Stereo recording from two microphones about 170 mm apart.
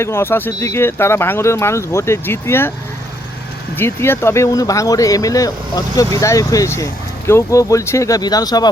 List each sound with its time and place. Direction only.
0.0 s speech: 15° left (ahead or behind)
3.8 s speech: 15° left (ahead or behind)